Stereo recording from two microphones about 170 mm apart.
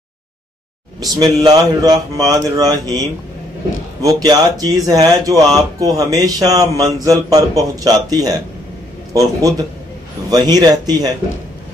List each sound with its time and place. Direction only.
1.0 s speech: 20° right (ahead or behind)
4.0 s speech: 20° right (ahead or behind)